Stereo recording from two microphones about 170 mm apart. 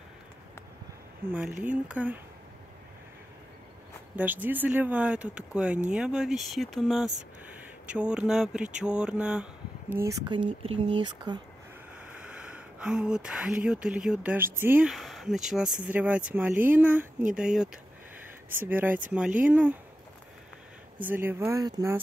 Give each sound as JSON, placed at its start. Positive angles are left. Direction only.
{"t": 1.3, "sound": "speech", "side_deg": -10}
{"t": 4.2, "sound": "speech", "side_deg": -10}
{"t": 8.8, "sound": "mantra", "side_deg": -5}
{"t": 10.2, "sound": "speech", "side_deg": -30}
{"t": 12.3, "sound": "speech", "side_deg": -5}
{"t": 21.0, "sound": "speech", "side_deg": -10}